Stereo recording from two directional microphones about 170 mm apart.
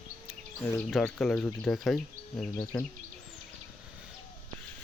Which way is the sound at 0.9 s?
Centre (ahead or behind).